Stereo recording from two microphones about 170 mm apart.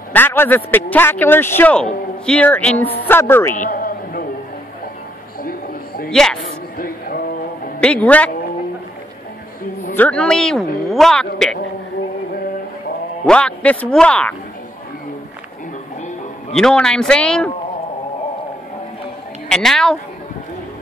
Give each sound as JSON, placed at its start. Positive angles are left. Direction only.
{"t": 0.1, "sound": "a man's voice", "side_deg": 10}
{"t": 3.5, "sound": "music", "side_deg": 50}
{"t": 5.4, "sound": "a sound", "side_deg": 60}
{"t": 6.0, "sound": "a woman's voice", "side_deg": 5}
{"t": 6.8, "sound": "a sound", "side_deg": 60}
{"t": 7.8, "sound": "a man's voice", "side_deg": 5}
{"t": 9.9, "sound": "speech", "side_deg": 5}
{"t": 13.2, "sound": "a man's voice", "side_deg": 5}
{"t": 16.5, "sound": "speech", "side_deg": 5}
{"t": 19.5, "sound": "speech", "side_deg": 5}